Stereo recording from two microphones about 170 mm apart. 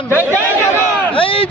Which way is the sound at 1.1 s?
30° left (ahead or behind).